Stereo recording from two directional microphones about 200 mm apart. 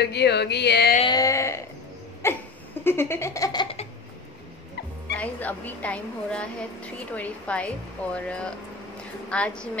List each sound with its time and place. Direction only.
0.0 s music: 55° left (ahead or behind)
1.0 s a sound: 15° left (ahead or behind)
2.2 s laughter: 10° left (ahead or behind)
5.1 s a woman's voice: 5° left (ahead or behind)